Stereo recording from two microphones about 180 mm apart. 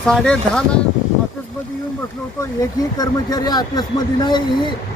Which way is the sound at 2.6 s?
20° left (ahead or behind).